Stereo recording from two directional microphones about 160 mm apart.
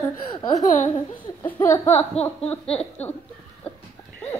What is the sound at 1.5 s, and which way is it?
Speech, 15° left (ahead or behind).